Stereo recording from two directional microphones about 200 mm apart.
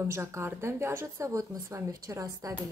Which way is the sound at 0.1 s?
15° right (ahead or behind).